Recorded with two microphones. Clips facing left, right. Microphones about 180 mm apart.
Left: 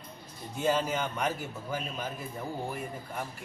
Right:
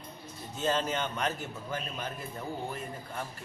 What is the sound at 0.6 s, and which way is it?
A man's voice, 10° left (ahead or behind).